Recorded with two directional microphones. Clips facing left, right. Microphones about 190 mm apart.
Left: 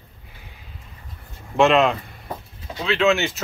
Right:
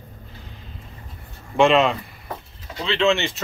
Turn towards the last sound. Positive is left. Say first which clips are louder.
# left 1 dB
turn(degrees=0)  # may be behind; listen again after turning